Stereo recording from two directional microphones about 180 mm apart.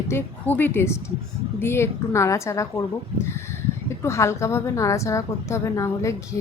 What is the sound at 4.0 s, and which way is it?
A woman's voice, 15° left (ahead or behind).